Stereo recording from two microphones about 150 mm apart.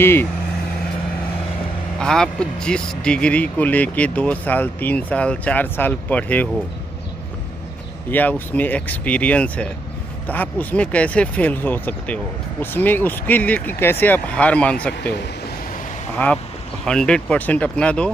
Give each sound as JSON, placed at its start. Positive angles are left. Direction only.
{"t": 0.0, "sound": "speech", "side_deg": 15}
{"t": 2.0, "sound": "speech", "side_deg": 5}
{"t": 8.1, "sound": "speech", "side_deg": 10}
{"t": 16.8, "sound": "speech", "side_deg": 5}